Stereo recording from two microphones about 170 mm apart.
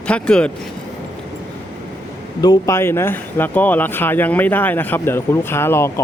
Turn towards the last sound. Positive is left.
turn(degrees=15)  # may be behind; listen again after turning